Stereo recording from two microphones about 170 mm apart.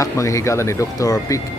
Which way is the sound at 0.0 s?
20° left (ahead or behind).